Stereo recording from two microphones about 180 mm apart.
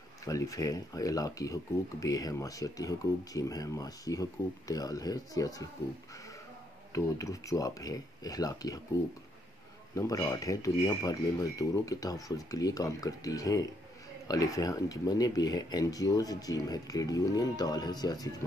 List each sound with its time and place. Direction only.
0.2 s speech: 20° left (ahead or behind)
6.9 s speech: 20° left (ahead or behind)
9.9 s speech: 20° left (ahead or behind)